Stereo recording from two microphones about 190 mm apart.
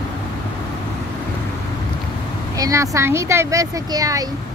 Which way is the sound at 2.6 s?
15° right (ahead or behind).